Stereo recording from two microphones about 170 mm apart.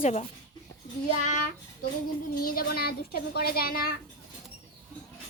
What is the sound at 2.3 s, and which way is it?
A woman's voice, 60° left (ahead or behind).